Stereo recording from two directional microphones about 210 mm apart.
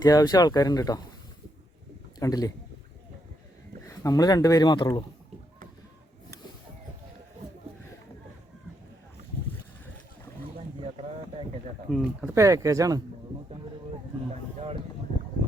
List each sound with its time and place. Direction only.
0.0 s speech: 15° left (ahead or behind)
2.1 s a man's voice: 15° left (ahead or behind)
3.8 s speech: 15° left (ahead or behind)
10.8 s a sound: 30° right (ahead or behind)
11.9 s speech: centre (ahead or behind)
12.3 s speech: 15° right (ahead or behind)